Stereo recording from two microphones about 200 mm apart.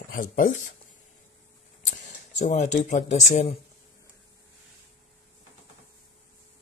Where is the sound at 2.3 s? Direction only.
35° left (ahead or behind).